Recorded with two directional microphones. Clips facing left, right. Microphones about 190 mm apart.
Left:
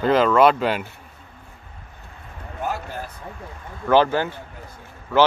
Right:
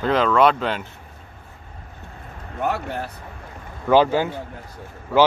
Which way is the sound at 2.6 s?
65° right (ahead or behind).